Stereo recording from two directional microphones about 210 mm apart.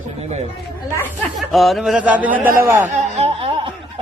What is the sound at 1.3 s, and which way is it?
Speech, centre (ahead or behind).